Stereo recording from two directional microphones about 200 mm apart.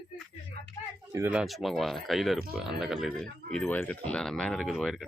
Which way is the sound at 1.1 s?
10° right (ahead or behind).